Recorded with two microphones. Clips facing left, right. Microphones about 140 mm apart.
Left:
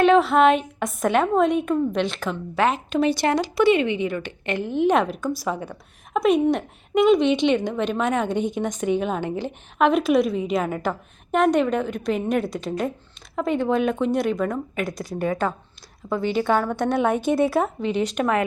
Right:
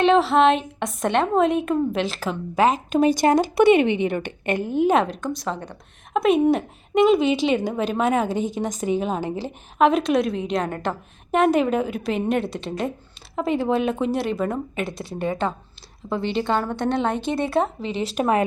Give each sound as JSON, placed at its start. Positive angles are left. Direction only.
{"t": 0.0, "sound": "a woman's voice", "side_deg": 0}
{"t": 2.6, "sound": "speech", "side_deg": -40}
{"t": 3.8, "sound": "speech", "side_deg": -20}
{"t": 4.0, "sound": "a woman's voice", "side_deg": -60}
{"t": 4.4, "sound": "speech", "side_deg": -45}
{"t": 4.9, "sound": "a woman's voice", "side_deg": 0}
{"t": 14.8, "sound": "speech", "side_deg": -25}
{"t": 16.0, "sound": "a woman's voice", "side_deg": 0}
{"t": 17.9, "sound": "speech", "side_deg": -30}